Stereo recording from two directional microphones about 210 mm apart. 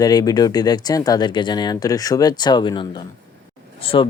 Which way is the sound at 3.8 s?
25° left (ahead or behind).